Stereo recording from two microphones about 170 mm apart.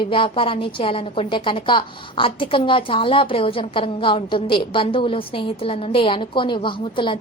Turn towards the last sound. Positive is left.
turn(degrees=30)  # may be behind; listen again after turning